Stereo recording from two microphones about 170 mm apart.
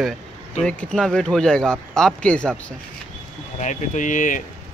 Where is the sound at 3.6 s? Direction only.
45° left (ahead or behind).